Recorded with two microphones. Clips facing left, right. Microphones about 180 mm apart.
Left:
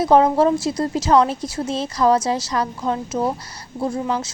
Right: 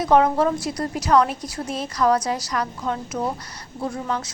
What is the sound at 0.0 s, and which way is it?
A woman's voice, 30° left (ahead or behind).